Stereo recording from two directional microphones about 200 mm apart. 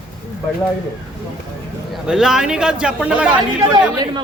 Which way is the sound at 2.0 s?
5° right (ahead or behind).